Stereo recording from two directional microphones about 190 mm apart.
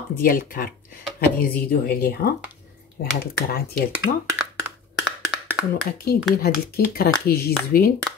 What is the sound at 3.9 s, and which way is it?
Speech, 10° right (ahead or behind).